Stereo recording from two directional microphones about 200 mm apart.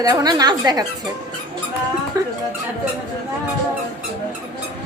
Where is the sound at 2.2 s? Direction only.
15° right (ahead or behind).